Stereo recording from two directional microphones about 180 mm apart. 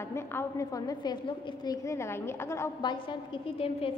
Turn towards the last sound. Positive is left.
turn(degrees=30)  # may be behind; listen again after turning